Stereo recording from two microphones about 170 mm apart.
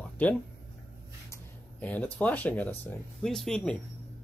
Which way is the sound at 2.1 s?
10° left (ahead or behind).